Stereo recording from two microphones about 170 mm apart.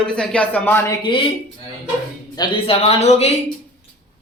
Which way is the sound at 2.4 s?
30° left (ahead or behind).